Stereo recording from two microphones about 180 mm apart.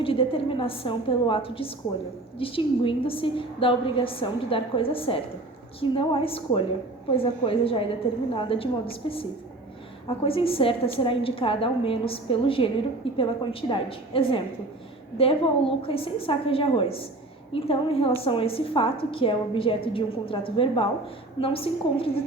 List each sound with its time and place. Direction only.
0.0 s a woman's voice: 30° left (ahead or behind)
10.2 s a woman's voice: 30° left (ahead or behind)